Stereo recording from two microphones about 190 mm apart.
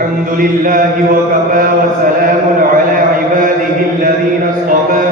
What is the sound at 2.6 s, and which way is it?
Chant, 45° right (ahead or behind).